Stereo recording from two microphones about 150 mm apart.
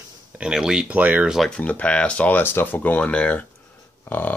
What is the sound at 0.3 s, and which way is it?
Speech, 5° right (ahead or behind).